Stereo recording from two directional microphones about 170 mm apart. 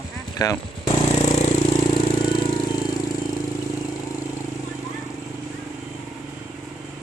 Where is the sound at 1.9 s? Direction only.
30° left (ahead or behind).